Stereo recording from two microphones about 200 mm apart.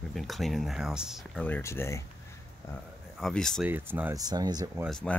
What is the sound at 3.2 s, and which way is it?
Speech, centre (ahead or behind).